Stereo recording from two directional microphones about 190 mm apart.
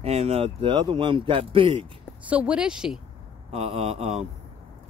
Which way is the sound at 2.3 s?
5° right (ahead or behind).